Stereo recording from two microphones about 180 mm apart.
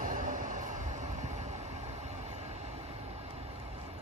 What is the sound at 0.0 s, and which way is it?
Train, 45° right (ahead or behind).